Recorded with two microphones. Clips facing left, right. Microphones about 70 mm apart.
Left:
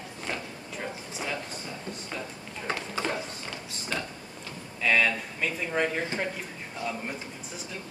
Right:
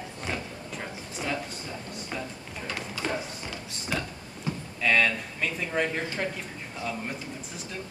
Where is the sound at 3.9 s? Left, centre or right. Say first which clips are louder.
Right 2 dB; centre.